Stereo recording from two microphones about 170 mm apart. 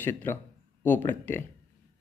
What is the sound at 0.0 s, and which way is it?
Speech, 10° left (ahead or behind).